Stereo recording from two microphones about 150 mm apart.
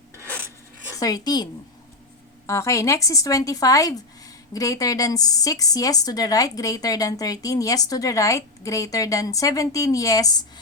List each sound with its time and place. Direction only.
0.9 s a woman's voice: 25° left (ahead or behind)
2.5 s a woman's voice: 20° left (ahead or behind)